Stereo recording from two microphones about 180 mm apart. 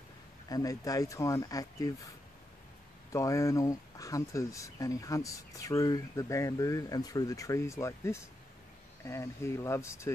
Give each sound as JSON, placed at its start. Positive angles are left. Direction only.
{"t": 0.5, "sound": "speech", "side_deg": 20}
{"t": 3.1, "sound": "speech", "side_deg": 15}